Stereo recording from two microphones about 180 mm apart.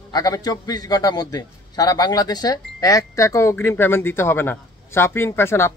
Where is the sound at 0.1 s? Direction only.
20° left (ahead or behind).